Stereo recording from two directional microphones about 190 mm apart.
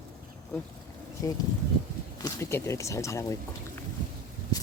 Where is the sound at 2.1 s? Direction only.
15° left (ahead or behind).